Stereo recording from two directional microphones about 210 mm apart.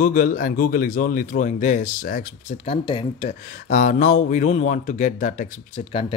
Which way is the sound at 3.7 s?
40° left (ahead or behind).